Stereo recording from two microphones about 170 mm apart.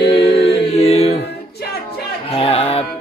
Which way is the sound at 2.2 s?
35° left (ahead or behind).